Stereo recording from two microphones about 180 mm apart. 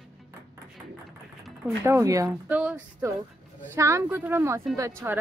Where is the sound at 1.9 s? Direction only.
15° right (ahead or behind).